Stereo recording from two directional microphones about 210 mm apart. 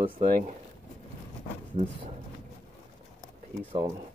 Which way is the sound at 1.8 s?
35° right (ahead or behind).